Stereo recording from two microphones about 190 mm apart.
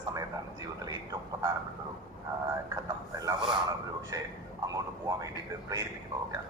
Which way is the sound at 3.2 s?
20° right (ahead or behind).